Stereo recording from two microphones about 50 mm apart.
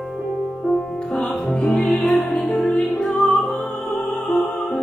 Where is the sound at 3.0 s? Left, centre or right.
Centre.